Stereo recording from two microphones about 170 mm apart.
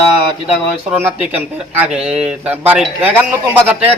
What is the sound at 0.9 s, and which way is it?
Speech, 10° right (ahead or behind).